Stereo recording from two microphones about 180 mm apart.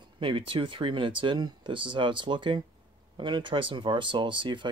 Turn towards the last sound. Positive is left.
turn(degrees=-25)  # may be behind; listen again after turning